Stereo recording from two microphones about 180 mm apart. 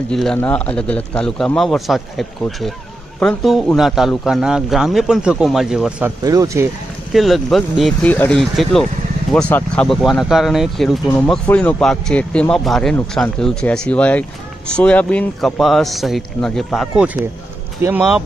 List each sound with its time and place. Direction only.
0.1 s speech: 5° left (ahead or behind)
6.2 s speech: 20° right (ahead or behind)
7.1 s speech: centre (ahead or behind)